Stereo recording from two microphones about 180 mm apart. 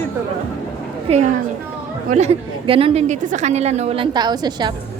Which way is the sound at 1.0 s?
40° right (ahead or behind).